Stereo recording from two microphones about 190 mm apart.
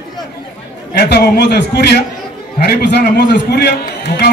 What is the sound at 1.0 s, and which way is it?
A man's voice, 55° left (ahead or behind).